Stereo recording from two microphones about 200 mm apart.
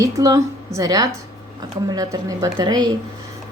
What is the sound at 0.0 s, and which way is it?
A woman's voice, 15° right (ahead or behind).